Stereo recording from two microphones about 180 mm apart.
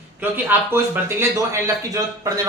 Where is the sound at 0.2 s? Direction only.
10° right (ahead or behind).